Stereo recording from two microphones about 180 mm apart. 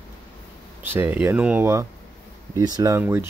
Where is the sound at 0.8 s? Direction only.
10° right (ahead or behind).